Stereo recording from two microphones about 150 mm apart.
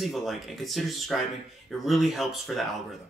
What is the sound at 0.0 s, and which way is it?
A man's voice, centre (ahead or behind).